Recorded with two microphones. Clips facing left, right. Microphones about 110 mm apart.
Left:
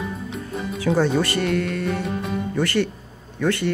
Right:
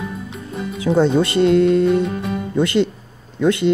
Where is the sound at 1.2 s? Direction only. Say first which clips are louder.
Right 8 dB; 25° right (ahead or behind).